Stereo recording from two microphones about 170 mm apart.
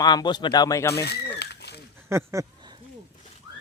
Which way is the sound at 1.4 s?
75° left (ahead or behind).